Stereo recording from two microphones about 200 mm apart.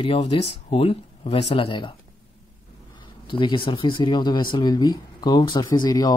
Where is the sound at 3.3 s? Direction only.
25° left (ahead or behind).